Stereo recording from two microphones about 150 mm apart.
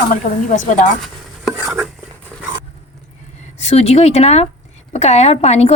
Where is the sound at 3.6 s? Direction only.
45° left (ahead or behind).